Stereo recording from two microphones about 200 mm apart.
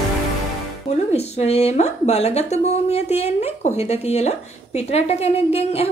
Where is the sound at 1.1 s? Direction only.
30° left (ahead or behind).